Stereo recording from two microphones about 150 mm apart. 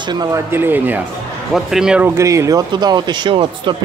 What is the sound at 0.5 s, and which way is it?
Speech, 15° right (ahead or behind).